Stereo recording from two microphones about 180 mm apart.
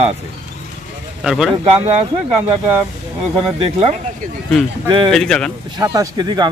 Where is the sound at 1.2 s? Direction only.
Centre (ahead or behind).